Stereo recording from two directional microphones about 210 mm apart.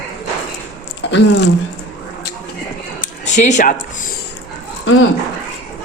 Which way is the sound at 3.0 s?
35° left (ahead or behind).